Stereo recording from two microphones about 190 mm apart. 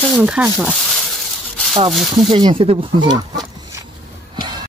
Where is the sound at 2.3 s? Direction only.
25° right (ahead or behind).